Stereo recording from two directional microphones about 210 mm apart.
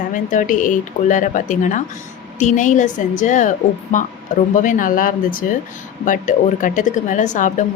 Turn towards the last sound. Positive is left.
turn(degrees=35)  # may be behind; listen again after turning